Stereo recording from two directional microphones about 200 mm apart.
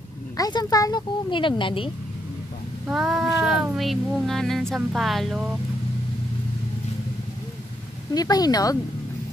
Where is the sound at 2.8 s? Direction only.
Centre (ahead or behind).